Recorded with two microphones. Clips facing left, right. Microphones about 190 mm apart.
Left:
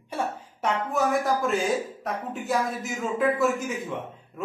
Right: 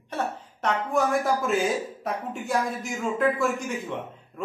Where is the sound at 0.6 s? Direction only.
Centre (ahead or behind).